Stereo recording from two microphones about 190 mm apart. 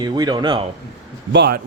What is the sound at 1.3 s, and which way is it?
Speech, 60° right (ahead or behind).